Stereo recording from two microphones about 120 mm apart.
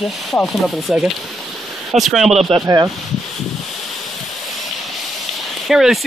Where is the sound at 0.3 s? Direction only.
Centre (ahead or behind).